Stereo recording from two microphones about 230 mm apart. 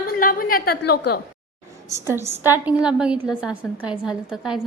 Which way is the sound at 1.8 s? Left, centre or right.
Centre.